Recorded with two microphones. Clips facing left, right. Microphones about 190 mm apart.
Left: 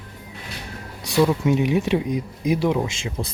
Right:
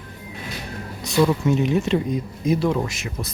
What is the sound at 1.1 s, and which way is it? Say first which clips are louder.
Speech: even; 10° left (ahead or behind).